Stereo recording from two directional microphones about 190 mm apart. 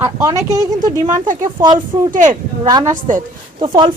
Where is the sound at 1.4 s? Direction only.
20° right (ahead or behind).